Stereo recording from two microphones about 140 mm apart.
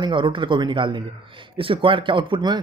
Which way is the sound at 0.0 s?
35° right (ahead or behind).